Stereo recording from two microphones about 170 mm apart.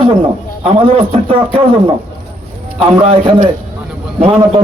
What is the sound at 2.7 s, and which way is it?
Speech, 35° right (ahead or behind).